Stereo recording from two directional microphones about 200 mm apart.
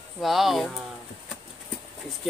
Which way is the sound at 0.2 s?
Centre (ahead or behind).